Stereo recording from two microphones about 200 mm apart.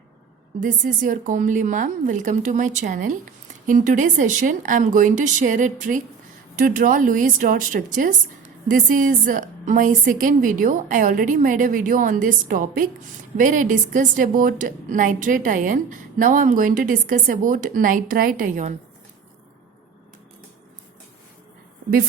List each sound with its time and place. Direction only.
0.6 s a woman's voice: 45° right (ahead or behind)